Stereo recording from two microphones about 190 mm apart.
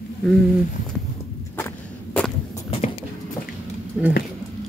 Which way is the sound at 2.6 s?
30° left (ahead or behind).